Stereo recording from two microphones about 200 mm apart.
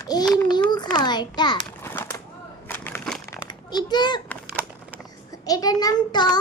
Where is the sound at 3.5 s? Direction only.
20° left (ahead or behind).